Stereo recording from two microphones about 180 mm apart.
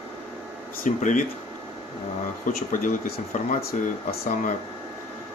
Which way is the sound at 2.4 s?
50° left (ahead or behind).